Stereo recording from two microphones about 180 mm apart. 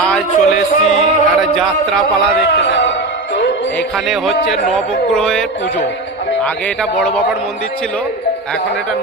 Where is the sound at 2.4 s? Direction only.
75° left (ahead or behind).